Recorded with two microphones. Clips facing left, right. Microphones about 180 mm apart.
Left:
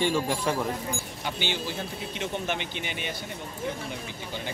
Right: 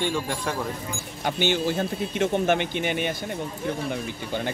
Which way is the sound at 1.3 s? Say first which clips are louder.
Right 8 dB; 50° right (ahead or behind).